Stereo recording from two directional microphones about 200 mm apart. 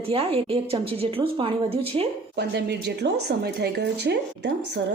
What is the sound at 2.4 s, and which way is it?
Speech, 55° right (ahead or behind).